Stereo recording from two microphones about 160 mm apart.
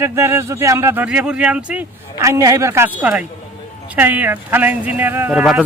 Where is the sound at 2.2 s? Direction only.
20° right (ahead or behind).